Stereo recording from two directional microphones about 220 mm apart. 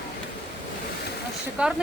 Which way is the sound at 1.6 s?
5° right (ahead or behind).